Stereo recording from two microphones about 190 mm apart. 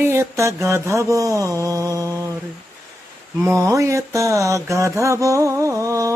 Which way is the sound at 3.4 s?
15° right (ahead or behind).